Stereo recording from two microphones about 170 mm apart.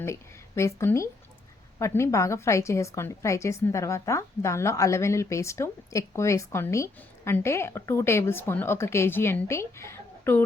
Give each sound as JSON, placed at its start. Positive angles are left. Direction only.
{"t": 0.0, "sound": "a woman's voice", "side_deg": 15}